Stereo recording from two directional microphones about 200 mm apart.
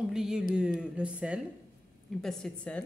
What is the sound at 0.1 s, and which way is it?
A woman's voice, 5° right (ahead or behind).